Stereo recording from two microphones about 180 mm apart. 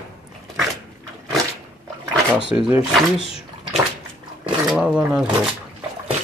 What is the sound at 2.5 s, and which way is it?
Speech, 45° left (ahead or behind).